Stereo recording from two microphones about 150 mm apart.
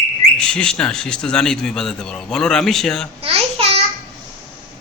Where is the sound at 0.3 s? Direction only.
5° left (ahead or behind).